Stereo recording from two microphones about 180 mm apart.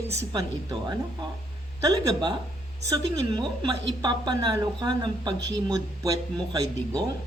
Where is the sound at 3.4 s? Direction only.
25° right (ahead or behind).